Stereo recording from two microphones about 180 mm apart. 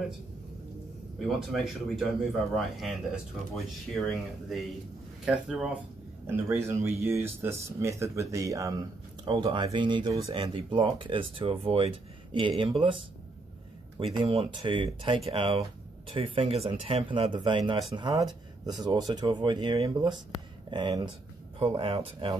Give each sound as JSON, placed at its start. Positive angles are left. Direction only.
{"t": 1.5, "sound": "speech", "side_deg": 0}
{"t": 14.2, "sound": "speech", "side_deg": -30}